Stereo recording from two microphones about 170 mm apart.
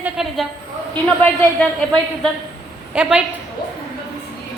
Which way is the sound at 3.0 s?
5° right (ahead or behind).